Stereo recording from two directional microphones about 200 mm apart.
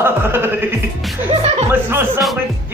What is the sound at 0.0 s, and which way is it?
Music, 10° right (ahead or behind).